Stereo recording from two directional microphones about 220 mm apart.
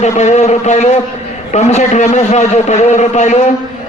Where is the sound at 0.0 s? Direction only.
30° left (ahead or behind).